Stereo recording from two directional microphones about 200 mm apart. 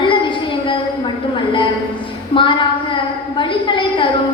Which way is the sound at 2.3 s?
25° left (ahead or behind).